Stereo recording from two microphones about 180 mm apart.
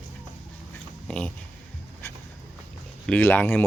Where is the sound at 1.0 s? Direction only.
5° left (ahead or behind).